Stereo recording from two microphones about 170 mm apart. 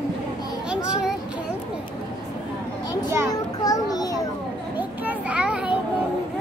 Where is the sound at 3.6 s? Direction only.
20° left (ahead or behind).